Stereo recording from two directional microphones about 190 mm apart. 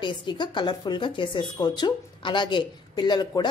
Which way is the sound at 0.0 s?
25° left (ahead or behind).